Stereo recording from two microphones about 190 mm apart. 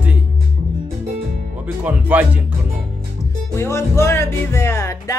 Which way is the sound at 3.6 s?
15° left (ahead or behind).